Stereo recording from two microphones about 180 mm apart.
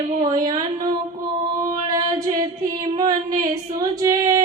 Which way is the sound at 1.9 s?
20° right (ahead or behind).